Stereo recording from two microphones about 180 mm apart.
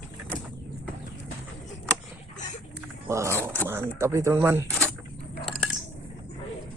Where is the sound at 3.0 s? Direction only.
15° right (ahead or behind).